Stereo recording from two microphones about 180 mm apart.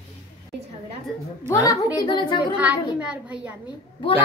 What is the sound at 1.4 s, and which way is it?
A woman's voice, 20° left (ahead or behind).